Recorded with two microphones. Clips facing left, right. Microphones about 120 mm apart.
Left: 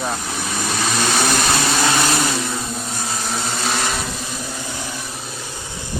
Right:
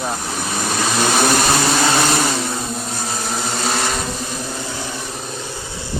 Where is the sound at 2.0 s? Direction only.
25° right (ahead or behind).